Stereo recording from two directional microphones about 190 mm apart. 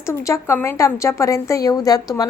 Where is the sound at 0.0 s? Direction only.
15° left (ahead or behind).